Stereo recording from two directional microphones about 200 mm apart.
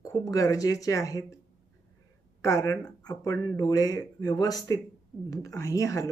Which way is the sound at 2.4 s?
15° left (ahead or behind).